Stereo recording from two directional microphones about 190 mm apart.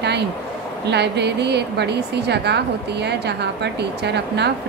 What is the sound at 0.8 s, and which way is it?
A woman's voice, 60° right (ahead or behind).